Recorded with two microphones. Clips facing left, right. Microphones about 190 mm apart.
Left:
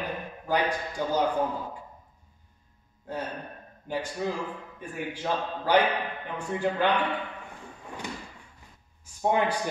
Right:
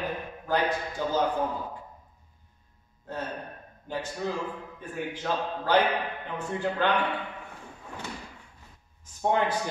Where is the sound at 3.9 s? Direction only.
10° left (ahead or behind).